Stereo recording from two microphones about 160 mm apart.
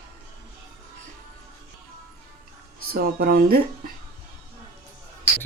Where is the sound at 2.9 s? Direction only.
70° right (ahead or behind).